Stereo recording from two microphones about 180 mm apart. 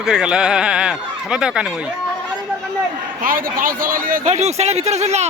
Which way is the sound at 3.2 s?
50° right (ahead or behind).